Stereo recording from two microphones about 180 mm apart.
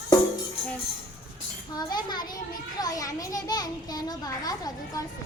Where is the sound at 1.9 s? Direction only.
25° left (ahead or behind).